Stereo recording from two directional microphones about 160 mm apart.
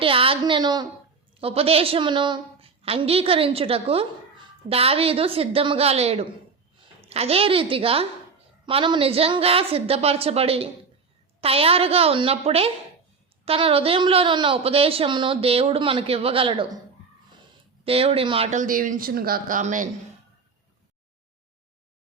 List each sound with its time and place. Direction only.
0.0 s a woman's voice: 35° right (ahead or behind)
1.4 s a woman's voice: 35° right (ahead or behind)
17.8 s a woman's voice: 35° right (ahead or behind)
18.5 s speech: 60° right (ahead or behind)